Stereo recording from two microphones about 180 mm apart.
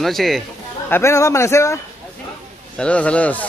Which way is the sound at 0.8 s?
15° left (ahead or behind).